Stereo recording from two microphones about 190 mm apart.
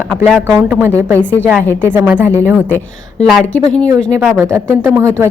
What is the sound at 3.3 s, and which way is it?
Speech, 5° left (ahead or behind).